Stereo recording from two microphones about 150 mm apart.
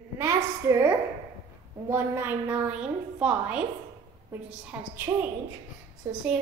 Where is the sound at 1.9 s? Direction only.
15° right (ahead or behind).